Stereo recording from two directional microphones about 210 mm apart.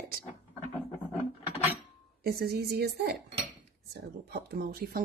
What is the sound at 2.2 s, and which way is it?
Speech, 50° right (ahead or behind).